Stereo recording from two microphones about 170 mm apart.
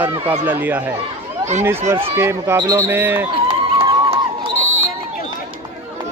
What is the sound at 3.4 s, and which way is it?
Crowd, 30° right (ahead or behind).